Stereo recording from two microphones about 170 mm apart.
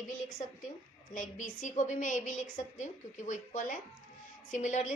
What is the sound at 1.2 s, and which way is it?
Speech, 50° left (ahead or behind).